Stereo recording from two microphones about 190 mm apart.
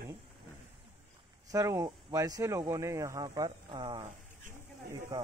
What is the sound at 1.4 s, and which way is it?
Speech, 15° right (ahead or behind).